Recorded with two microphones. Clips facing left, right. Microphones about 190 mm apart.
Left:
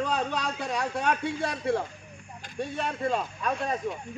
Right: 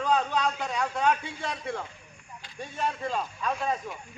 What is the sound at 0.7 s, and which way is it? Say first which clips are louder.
A man's voice: right 1 dB; 60° left (ahead or behind).